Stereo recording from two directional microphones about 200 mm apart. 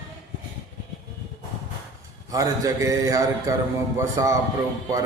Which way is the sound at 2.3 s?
15° right (ahead or behind).